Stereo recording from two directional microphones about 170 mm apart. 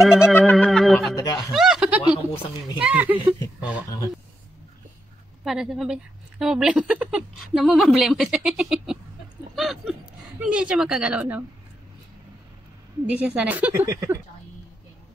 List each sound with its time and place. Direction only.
0.0 s a woman's voice: 5° right (ahead or behind)
0.3 s a sound: 10° left (ahead or behind)
1.1 s snicker: 20° left (ahead or behind)
1.5 s snicker: centre (ahead or behind)
2.3 s speech: 30° left (ahead or behind)
2.8 s a woman's voice: 10° right (ahead or behind)
5.4 s a woman's voice: centre (ahead or behind)
13.1 s a woman's voice: 10° right (ahead or behind)